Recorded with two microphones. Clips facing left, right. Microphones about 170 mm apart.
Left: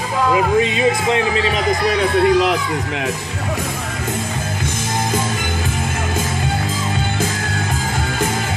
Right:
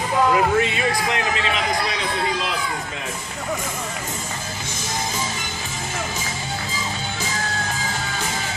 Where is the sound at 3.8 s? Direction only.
60° left (ahead or behind).